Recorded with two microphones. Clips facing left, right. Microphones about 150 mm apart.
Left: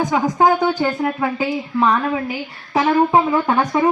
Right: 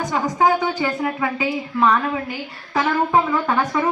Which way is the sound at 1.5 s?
20° left (ahead or behind).